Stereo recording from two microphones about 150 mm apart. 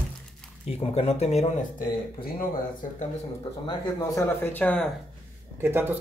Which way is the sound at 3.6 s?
25° left (ahead or behind).